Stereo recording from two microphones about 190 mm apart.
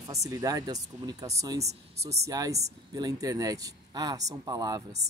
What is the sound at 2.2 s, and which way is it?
Speech, 20° right (ahead or behind).